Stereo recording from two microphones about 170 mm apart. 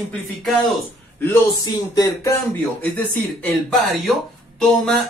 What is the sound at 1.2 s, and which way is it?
Speech, 15° left (ahead or behind).